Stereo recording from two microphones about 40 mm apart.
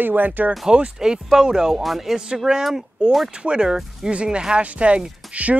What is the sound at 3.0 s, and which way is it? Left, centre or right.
Speech, right.